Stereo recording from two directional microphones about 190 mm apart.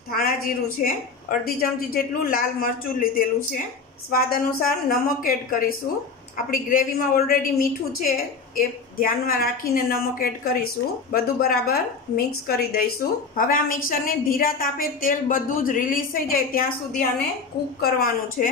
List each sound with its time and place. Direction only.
0.1 s a woman's voice: 50° left (ahead or behind)
17.8 s a woman's voice: 50° left (ahead or behind)